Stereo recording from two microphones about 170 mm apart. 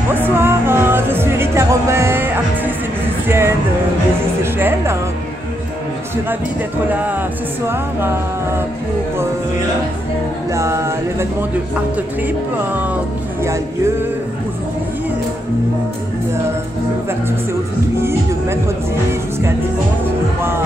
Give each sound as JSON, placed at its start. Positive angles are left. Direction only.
{"t": 0.1, "sound": "music", "side_deg": -15}
{"t": 6.9, "sound": "music", "side_deg": -10}
{"t": 10.5, "sound": "music", "side_deg": -15}
{"t": 12.7, "sound": "music", "side_deg": -10}